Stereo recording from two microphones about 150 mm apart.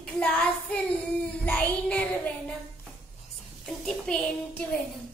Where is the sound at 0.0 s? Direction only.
10° left (ahead or behind).